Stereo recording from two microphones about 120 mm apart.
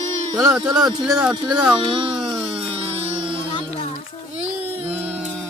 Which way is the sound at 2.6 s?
55° right (ahead or behind).